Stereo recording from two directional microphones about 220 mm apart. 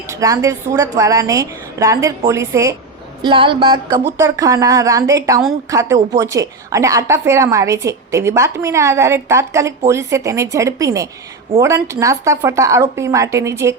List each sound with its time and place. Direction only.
0.1 s a woman's voice: 15° right (ahead or behind)
3.2 s a sound: 20° right (ahead or behind)
4.2 s a woman's voice: 15° right (ahead or behind)